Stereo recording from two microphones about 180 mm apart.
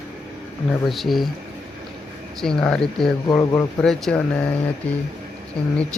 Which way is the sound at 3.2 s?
20° left (ahead or behind).